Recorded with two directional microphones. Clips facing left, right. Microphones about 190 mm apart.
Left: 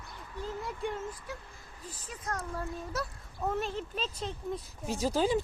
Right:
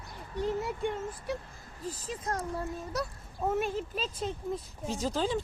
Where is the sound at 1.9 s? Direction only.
35° right (ahead or behind).